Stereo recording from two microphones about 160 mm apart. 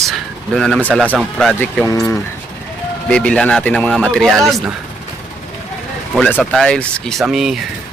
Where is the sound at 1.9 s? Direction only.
20° left (ahead or behind).